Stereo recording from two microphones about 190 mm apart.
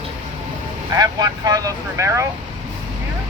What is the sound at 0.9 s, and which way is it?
Speech, 20° right (ahead or behind).